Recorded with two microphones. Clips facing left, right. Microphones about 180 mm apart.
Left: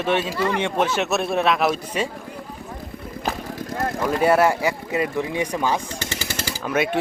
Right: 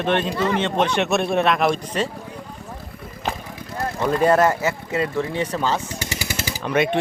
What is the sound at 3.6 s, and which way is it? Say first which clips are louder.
Vehicle: left 3 dB; 45° left (ahead or behind).